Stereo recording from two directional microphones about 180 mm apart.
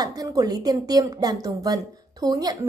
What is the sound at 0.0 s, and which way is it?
A woman's voice, 20° right (ahead or behind).